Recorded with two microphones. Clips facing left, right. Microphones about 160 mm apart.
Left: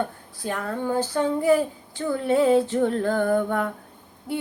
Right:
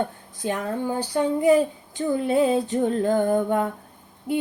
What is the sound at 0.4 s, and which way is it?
Speech, 20° right (ahead or behind).